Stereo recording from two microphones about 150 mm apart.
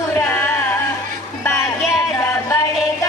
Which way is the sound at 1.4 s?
20° left (ahead or behind).